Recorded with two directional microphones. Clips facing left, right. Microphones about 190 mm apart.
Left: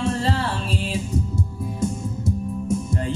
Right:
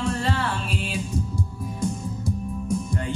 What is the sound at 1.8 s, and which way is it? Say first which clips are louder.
Music: left 2 dB; 25° left (ahead or behind).